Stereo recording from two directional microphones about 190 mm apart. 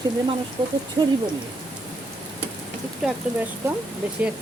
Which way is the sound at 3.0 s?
5° right (ahead or behind).